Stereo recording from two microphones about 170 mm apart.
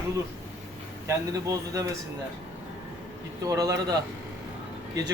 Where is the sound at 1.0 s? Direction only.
20° right (ahead or behind).